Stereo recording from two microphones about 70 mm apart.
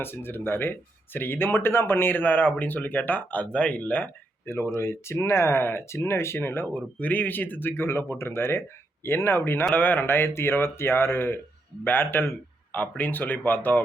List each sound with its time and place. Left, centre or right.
0.0 s speech: left
4.4 s speech: left